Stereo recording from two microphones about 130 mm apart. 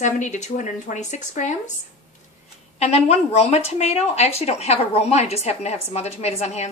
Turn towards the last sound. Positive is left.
turn(degrees=55)  # may be behind; listen again after turning